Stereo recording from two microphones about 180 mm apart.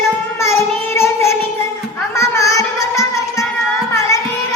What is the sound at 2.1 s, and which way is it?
Music, 15° left (ahead or behind).